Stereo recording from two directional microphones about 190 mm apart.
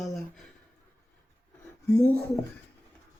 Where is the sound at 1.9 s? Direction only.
10° left (ahead or behind).